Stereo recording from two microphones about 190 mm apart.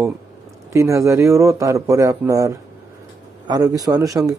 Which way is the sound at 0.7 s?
15° right (ahead or behind).